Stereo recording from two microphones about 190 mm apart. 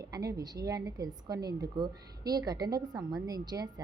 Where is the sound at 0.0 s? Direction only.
20° right (ahead or behind).